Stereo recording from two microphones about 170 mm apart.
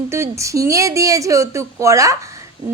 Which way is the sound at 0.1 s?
15° right (ahead or behind).